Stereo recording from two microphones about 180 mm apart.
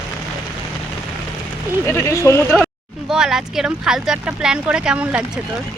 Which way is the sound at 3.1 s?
5° right (ahead or behind).